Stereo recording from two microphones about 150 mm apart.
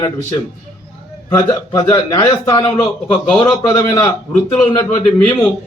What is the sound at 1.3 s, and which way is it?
A man's voice, 20° left (ahead or behind).